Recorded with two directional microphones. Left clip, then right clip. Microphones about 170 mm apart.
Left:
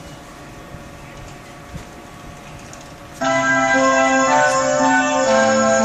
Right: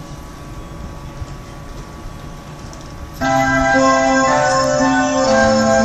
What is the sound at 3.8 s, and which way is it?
Music, 20° left (ahead or behind).